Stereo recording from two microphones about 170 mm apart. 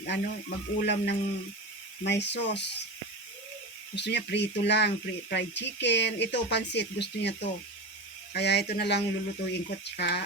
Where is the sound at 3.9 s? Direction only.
90° left.